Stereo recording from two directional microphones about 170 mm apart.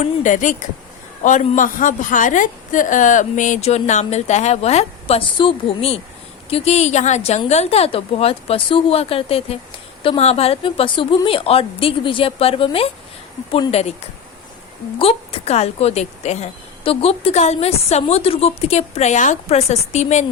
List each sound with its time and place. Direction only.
0.0 s a woman's voice: 45° left (ahead or behind)